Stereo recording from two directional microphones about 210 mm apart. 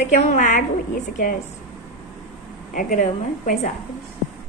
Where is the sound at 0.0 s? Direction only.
35° left (ahead or behind).